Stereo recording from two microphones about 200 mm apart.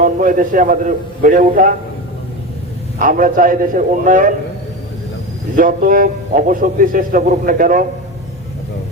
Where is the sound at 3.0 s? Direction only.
40° right (ahead or behind).